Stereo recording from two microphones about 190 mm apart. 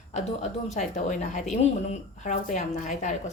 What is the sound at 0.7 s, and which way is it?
Speech, 40° left (ahead or behind).